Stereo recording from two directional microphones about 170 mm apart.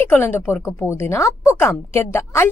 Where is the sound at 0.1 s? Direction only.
15° left (ahead or behind).